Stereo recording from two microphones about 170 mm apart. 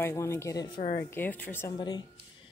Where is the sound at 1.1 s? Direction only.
10° left (ahead or behind).